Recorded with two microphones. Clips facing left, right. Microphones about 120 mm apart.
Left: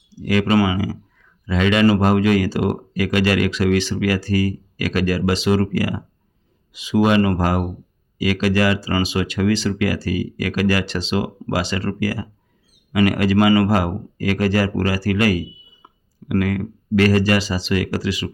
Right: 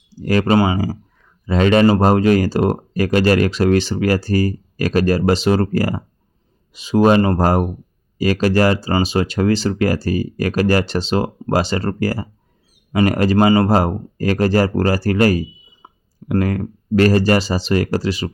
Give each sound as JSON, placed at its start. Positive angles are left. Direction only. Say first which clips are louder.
{"t": 0.2, "sound": "speech", "louder": "right 2 dB", "side_deg": -35}